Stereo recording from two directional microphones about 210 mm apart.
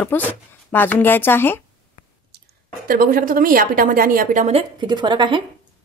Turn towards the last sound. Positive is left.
turn(degrees=-20)  # may be behind; listen again after turning